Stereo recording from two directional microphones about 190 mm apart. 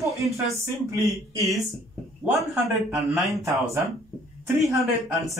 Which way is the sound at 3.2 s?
Centre (ahead or behind).